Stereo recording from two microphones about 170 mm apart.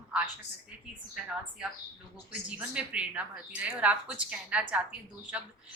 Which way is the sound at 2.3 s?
5° right (ahead or behind).